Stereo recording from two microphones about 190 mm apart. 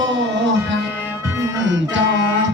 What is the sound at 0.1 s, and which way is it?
Music, 70° right (ahead or behind).